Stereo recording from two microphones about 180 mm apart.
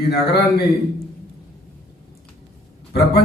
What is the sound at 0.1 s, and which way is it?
Speech, 65° left (ahead or behind).